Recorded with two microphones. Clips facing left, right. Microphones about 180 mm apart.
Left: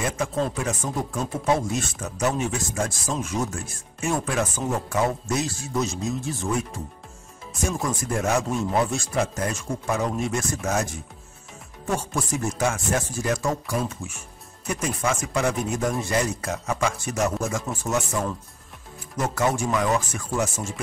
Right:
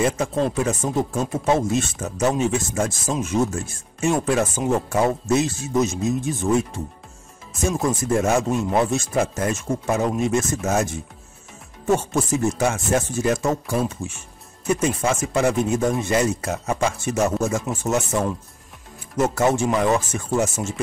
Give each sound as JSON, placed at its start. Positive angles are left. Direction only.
{"t": 0.0, "sound": "speech", "side_deg": -25}
{"t": 7.8, "sound": "speech", "side_deg": -25}
{"t": 19.1, "sound": "speech", "side_deg": -25}